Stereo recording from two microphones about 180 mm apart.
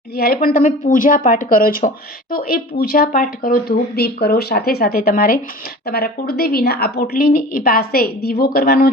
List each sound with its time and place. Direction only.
0.3 s a woman's voice: 50° left (ahead or behind)